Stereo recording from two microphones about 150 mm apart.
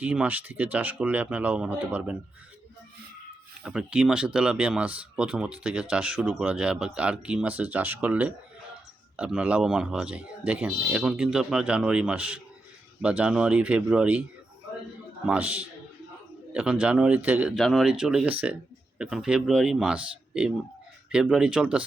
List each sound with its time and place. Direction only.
0.0 s speech: 10° right (ahead or behind)
3.6 s speech: 5° right (ahead or behind)
15.3 s speech: 10° right (ahead or behind)